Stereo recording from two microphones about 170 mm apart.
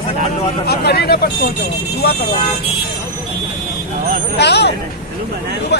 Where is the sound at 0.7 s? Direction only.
70° left (ahead or behind).